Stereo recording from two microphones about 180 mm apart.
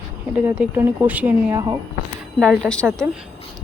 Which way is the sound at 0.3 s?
5° right (ahead or behind).